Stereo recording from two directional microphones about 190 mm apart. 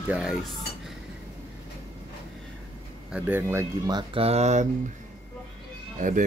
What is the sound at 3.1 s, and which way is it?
Speech, 10° right (ahead or behind).